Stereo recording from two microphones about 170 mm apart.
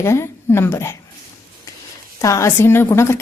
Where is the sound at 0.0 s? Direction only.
15° left (ahead or behind).